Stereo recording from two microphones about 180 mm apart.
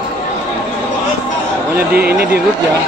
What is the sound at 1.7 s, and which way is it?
Speech, 60° right (ahead or behind).